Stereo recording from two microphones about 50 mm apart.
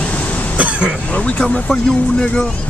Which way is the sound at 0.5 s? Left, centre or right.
Right.